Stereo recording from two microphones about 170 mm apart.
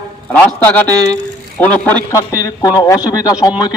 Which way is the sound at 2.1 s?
20° left (ahead or behind).